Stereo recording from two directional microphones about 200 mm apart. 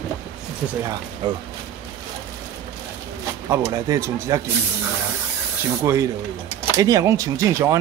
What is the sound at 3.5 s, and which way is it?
Speech, 15° right (ahead or behind).